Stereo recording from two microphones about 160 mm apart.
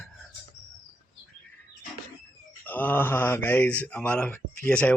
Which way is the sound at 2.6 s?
10° left (ahead or behind).